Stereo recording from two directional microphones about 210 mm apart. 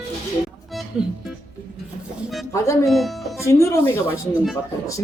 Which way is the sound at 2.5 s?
15° left (ahead or behind).